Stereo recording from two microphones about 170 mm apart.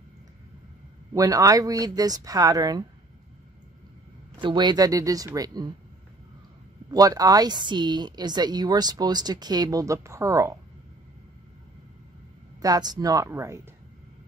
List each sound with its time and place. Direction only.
1.1 s speech: 20° right (ahead or behind)
4.4 s speech: 25° right (ahead or behind)
6.9 s speech: 20° right (ahead or behind)
12.6 s speech: 25° right (ahead or behind)